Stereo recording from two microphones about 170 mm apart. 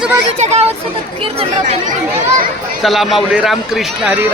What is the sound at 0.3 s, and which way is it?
Speech, 40° right (ahead or behind).